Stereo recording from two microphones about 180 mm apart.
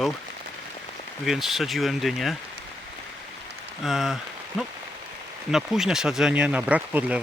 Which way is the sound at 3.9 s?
Centre (ahead or behind).